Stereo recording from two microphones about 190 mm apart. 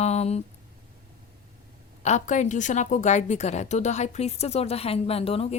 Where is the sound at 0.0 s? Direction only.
35° left (ahead or behind).